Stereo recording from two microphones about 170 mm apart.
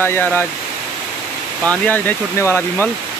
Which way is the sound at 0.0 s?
10° left (ahead or behind).